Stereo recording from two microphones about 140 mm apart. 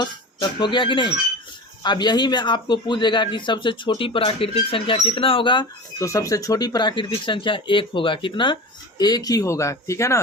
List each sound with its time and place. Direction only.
0.0 s speech: 35° left (ahead or behind)
6.0 s speech: 20° left (ahead or behind)